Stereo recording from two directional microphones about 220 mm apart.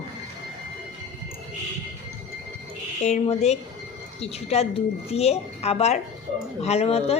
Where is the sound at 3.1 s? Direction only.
30° left (ahead or behind).